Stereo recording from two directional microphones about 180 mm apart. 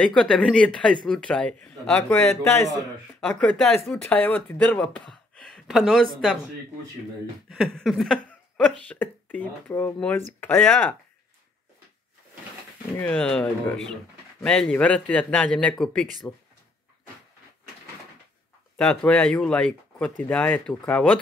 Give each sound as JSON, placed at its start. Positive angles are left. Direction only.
{"t": 0.0, "sound": "a man's voice", "side_deg": 5}
{"t": 7.4, "sound": "speech", "side_deg": 0}
{"t": 12.9, "sound": "a man's voice", "side_deg": 10}
{"t": 18.8, "sound": "speech", "side_deg": 5}